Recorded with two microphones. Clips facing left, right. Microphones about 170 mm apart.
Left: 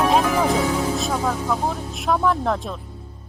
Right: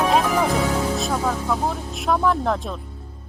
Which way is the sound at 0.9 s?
Centre (ahead or behind).